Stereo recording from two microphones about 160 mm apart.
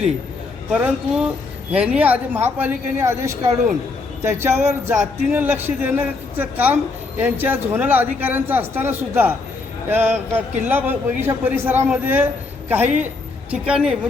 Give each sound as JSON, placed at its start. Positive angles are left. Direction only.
{"t": 0.7, "sound": "a man's voice", "side_deg": -5}